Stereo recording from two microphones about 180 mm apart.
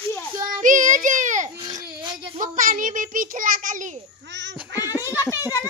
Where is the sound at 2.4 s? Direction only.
45° right (ahead or behind).